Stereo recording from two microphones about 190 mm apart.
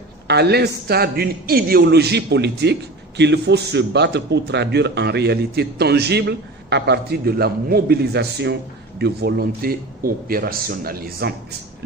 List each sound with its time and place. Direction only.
0.3 s a man's voice: 60° right (ahead or behind)